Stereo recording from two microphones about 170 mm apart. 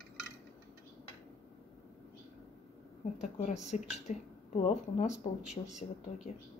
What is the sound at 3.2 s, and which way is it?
A woman's voice, 45° left (ahead or behind).